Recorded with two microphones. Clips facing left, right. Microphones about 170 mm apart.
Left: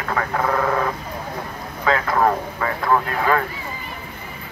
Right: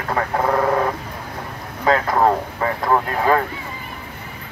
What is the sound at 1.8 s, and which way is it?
Speech, 35° right (ahead or behind).